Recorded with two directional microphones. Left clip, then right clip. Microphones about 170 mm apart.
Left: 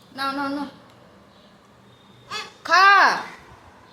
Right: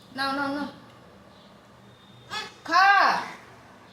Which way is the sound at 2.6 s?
60° left (ahead or behind).